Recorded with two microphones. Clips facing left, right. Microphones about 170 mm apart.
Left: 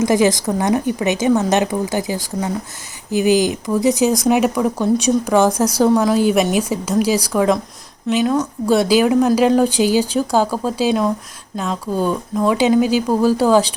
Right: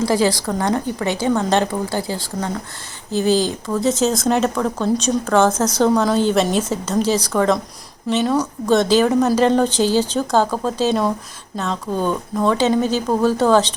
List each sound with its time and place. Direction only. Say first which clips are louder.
0.0 s a woman's voice: left 3 dB; 20° left (ahead or behind)